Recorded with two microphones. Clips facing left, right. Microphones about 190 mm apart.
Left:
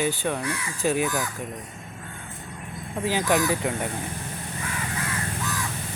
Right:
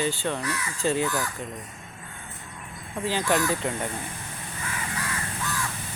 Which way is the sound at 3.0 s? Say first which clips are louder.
Left 2 dB; 15° left (ahead or behind).